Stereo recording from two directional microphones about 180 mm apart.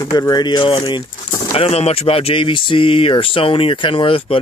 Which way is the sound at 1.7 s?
35° left (ahead or behind).